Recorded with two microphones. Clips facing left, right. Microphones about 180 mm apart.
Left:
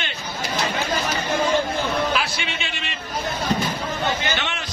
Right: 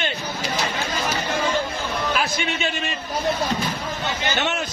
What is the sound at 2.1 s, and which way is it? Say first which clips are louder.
Speech: right 2 dB; 45° right (ahead or behind).